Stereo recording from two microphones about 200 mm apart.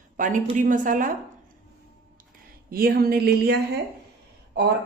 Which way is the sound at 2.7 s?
50° right (ahead or behind).